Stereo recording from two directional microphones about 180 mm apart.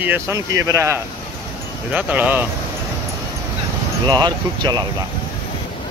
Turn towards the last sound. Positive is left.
turn(degrees=-25)  # may be behind; listen again after turning